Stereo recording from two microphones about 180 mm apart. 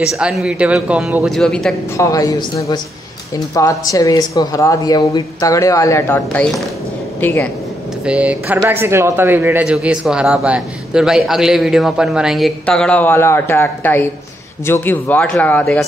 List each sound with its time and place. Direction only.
0.0 s a man's voice: 5° right (ahead or behind)
2.0 s speech: 20° left (ahead or behind)
8.0 s a man's voice: 5° right (ahead or behind)